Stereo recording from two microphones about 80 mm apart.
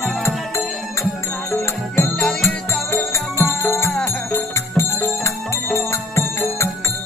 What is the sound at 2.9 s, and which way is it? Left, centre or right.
Music, left.